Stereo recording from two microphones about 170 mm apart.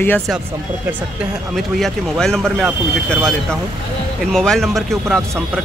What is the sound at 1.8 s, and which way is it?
Speech, 5° left (ahead or behind).